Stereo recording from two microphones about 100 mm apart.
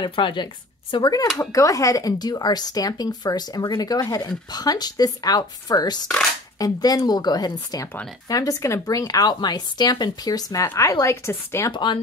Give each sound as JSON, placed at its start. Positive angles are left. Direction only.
{"t": 0.0, "sound": "speech", "side_deg": 55}
{"t": 0.9, "sound": "a woman's voice", "side_deg": 45}
{"t": 11.7, "sound": "speech", "side_deg": 50}